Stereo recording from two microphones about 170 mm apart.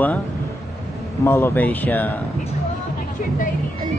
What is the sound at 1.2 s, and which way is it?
Speech, 15° left (ahead or behind).